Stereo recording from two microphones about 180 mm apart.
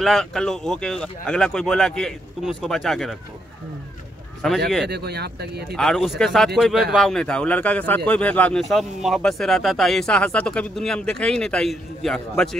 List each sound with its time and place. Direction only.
0.0 s speech: 5° left (ahead or behind)
4.4 s speech: centre (ahead or behind)
4.8 s speech: 65° right (ahead or behind)
5.8 s speech: centre (ahead or behind)